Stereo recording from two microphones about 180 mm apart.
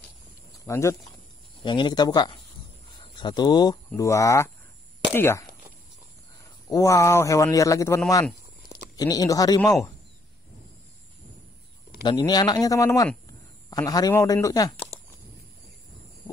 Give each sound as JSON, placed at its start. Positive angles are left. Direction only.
{"t": 0.7, "sound": "speech", "side_deg": 15}
{"t": 1.6, "sound": "a man's voice", "side_deg": 25}
{"t": 6.7, "sound": "a man's voice", "side_deg": 15}
{"t": 9.6, "sound": "a man's voice", "side_deg": 0}
{"t": 12.0, "sound": "a man's voice", "side_deg": 25}